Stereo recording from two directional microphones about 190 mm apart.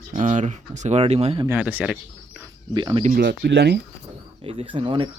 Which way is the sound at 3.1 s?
60° right (ahead or behind).